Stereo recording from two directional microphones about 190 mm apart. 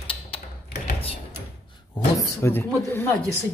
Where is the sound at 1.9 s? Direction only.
10° left (ahead or behind).